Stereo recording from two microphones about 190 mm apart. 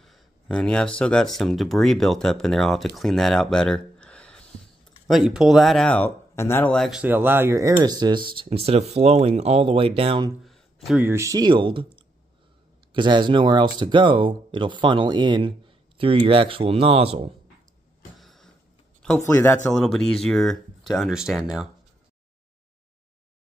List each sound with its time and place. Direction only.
0.0 s speech: centre (ahead or behind); by 10.3 s 30° right (ahead or behind)
10.4 s a sound: centre (ahead or behind)
11.1 s speech: 15° right (ahead or behind); by 17.3 s 30° right (ahead or behind)
18.2 s vehicle: centre (ahead or behind)
19.2 s speech: 15° left (ahead or behind)
19.7 s speech: 5° left (ahead or behind)